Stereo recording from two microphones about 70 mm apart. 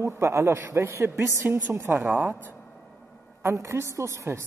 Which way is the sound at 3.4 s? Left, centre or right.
Right.